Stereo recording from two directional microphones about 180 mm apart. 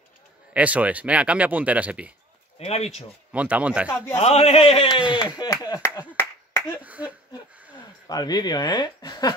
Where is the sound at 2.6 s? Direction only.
35° left (ahead or behind).